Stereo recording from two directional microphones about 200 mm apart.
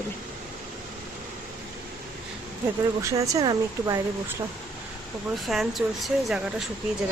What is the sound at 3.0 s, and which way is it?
Speech, 15° right (ahead or behind).